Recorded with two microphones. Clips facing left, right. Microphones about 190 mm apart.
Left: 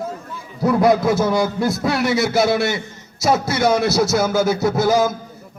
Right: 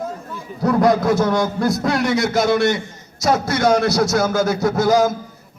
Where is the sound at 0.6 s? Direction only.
5° left (ahead or behind).